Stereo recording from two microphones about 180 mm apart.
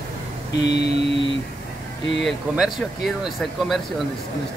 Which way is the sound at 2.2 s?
5° right (ahead or behind).